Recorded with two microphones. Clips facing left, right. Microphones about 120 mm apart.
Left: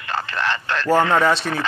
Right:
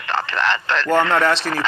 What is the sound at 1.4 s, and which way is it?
Speech, 90° right.